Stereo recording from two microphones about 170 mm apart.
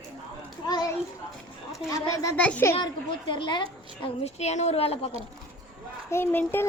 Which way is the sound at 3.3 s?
30° left (ahead or behind).